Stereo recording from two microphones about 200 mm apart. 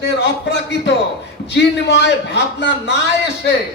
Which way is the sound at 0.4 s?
60° left (ahead or behind).